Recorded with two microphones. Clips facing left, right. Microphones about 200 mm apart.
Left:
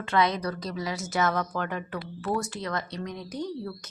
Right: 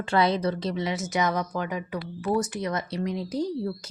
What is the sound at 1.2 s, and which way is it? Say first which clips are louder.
Speech: even; 15° right (ahead or behind).